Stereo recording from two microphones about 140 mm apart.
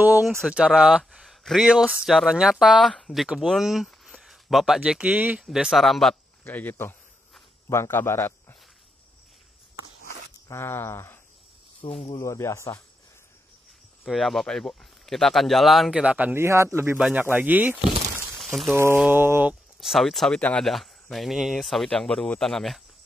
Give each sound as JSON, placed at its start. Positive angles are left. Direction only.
{"t": 0.4, "sound": "speech", "side_deg": -5}
{"t": 6.5, "sound": "a man's voice", "side_deg": 15}
{"t": 10.5, "sound": "speech", "side_deg": 15}
{"t": 11.8, "sound": "speech", "side_deg": 45}
{"t": 12.1, "sound": "speech", "side_deg": 20}
{"t": 14.0, "sound": "speech", "side_deg": 0}
{"t": 18.4, "sound": "a sound", "side_deg": 0}
{"t": 18.7, "sound": "speech", "side_deg": -15}
{"t": 19.8, "sound": "speech", "side_deg": 0}